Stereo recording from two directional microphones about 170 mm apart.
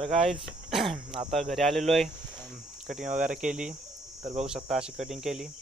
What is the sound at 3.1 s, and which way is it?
Speech, 50° right (ahead or behind).